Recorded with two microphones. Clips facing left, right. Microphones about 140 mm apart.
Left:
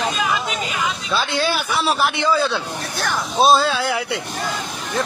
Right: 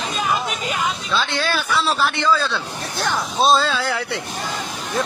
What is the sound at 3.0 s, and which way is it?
Speech, 20° right (ahead or behind).